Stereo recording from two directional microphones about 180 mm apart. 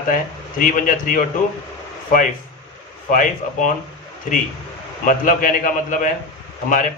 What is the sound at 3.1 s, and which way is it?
Speech, 45° left (ahead or behind).